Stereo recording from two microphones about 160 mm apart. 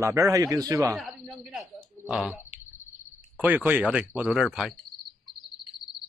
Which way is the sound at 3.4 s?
10° right (ahead or behind).